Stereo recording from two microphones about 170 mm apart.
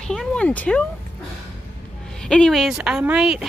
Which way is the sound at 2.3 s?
5° left (ahead or behind).